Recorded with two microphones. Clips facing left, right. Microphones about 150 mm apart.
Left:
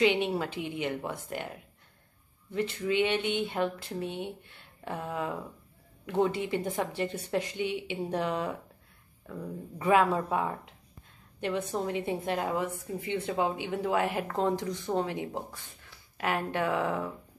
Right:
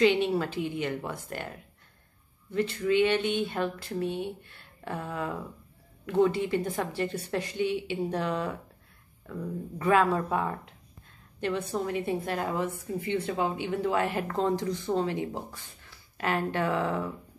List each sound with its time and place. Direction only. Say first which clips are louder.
0.0 s a woman's voice: right 2 dB; 15° left (ahead or behind)
2.5 s a woman's voice: right 3 dB; 15° left (ahead or behind)
9.8 s a woman's voice: even; 15° left (ahead or behind)